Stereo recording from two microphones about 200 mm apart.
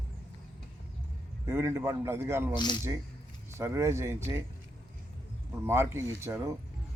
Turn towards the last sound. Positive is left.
turn(degrees=-15)  # may be behind; listen again after turning